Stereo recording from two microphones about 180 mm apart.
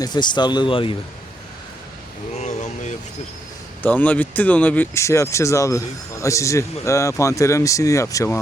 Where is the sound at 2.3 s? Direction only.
40° left (ahead or behind).